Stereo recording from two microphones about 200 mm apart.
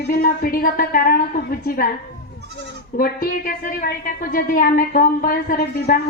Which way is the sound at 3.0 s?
45° left (ahead or behind).